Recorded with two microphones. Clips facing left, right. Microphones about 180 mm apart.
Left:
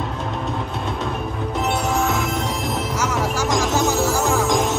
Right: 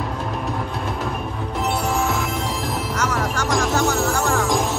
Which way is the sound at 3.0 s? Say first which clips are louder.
Left 1 dB; 5° left (ahead or behind).